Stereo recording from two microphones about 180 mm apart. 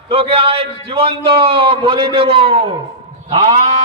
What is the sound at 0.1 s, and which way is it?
A man's voice, 30° right (ahead or behind).